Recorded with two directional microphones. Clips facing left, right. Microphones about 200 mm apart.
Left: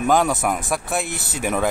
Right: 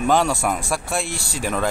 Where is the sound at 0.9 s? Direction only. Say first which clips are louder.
Even; 20° left (ahead or behind).